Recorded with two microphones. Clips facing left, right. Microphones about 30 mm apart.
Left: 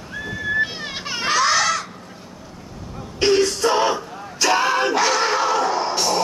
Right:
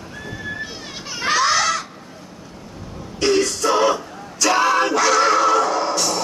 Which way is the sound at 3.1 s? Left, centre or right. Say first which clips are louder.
Left 1 dB; centre.